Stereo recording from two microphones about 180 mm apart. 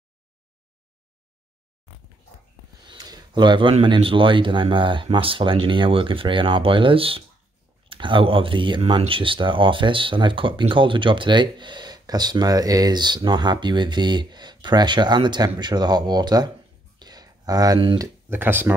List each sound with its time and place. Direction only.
2.9 s speech: 25° right (ahead or behind)